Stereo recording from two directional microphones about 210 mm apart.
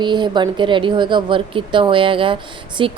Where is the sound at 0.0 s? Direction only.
20° right (ahead or behind).